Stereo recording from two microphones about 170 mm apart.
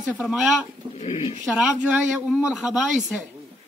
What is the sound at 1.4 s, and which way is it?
Speech, 5° right (ahead or behind).